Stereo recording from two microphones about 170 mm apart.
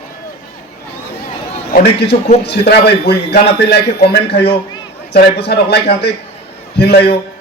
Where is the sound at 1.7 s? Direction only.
80° left.